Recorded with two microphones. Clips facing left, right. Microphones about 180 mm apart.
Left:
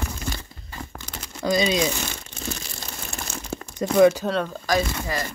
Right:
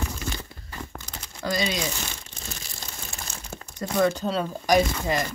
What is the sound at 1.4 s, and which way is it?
Speech, 15° left (ahead or behind).